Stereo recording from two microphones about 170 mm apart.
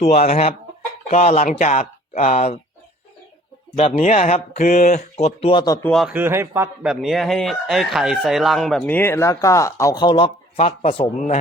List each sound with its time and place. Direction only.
0.0 s speech: 40° left (ahead or behind)
3.8 s speech: 35° left (ahead or behind)
4.5 s speech: 50° left (ahead or behind); by 5.8 s 25° left (ahead or behind)
5.9 s speech: centre (ahead or behind)
6.1 s speech: 15° right (ahead or behind)
6.8 s a man's voice: centre (ahead or behind); by 11.1 s 35° left (ahead or behind)